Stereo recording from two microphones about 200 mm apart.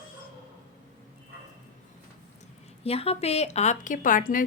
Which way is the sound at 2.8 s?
30° left (ahead or behind).